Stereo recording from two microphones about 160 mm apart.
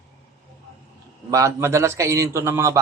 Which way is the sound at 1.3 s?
20° right (ahead or behind).